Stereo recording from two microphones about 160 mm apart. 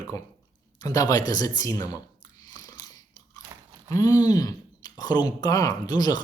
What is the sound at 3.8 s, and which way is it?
Speech, 20° left (ahead or behind).